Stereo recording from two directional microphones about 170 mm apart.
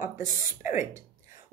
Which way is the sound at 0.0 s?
15° right (ahead or behind).